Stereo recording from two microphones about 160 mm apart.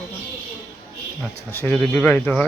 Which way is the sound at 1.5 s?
10° left (ahead or behind).